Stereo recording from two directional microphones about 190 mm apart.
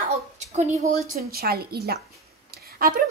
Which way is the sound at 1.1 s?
55° right (ahead or behind).